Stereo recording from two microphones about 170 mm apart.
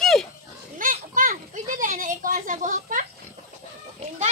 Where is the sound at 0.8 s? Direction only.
55° right (ahead or behind).